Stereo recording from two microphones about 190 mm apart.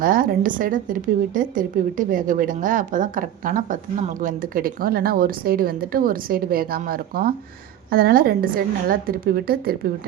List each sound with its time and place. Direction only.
0.0 s a woman's voice: 45° right (ahead or behind)